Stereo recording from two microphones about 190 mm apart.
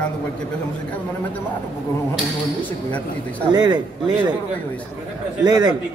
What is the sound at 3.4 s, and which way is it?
Speech, 20° right (ahead or behind).